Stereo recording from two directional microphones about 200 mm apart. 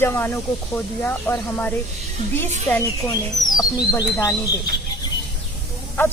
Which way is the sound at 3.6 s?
15° left (ahead or behind).